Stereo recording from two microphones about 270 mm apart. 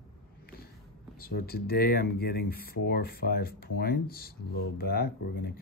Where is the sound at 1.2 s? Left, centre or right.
Left.